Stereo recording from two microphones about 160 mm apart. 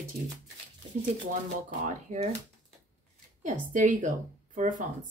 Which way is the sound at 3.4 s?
55° right (ahead or behind).